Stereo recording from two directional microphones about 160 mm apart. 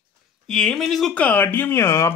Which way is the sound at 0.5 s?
5° left (ahead or behind).